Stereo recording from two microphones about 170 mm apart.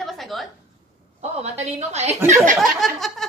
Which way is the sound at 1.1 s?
40° right (ahead or behind).